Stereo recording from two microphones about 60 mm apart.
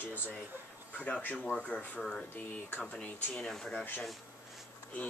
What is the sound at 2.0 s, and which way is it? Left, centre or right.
Speech, centre.